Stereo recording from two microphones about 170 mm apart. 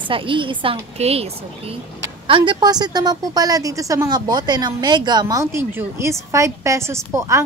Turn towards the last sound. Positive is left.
turn(degrees=-15)  # may be behind; listen again after turning